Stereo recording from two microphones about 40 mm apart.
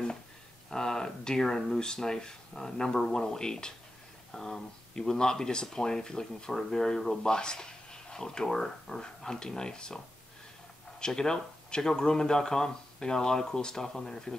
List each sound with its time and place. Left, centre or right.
0.7 s speech: centre
11.0 s speech: centre